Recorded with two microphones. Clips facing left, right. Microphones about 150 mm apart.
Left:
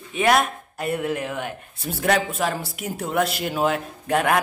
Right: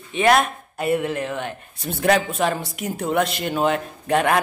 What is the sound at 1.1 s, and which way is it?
Speech, 10° left (ahead or behind).